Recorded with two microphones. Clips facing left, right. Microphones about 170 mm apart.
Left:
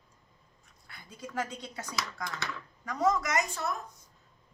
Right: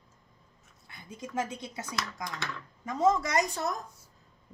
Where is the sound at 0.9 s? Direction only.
25° right (ahead or behind).